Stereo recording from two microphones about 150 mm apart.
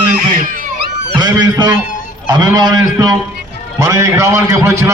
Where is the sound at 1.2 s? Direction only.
30° right (ahead or behind).